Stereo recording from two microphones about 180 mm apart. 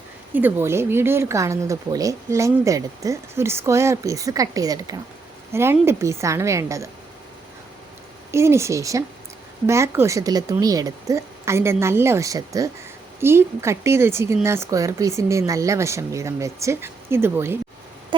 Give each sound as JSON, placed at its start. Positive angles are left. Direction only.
{"t": 0.3, "sound": "speech", "side_deg": -10}
{"t": 8.3, "sound": "speech", "side_deg": -15}
{"t": 18.1, "sound": "a sound", "side_deg": -25}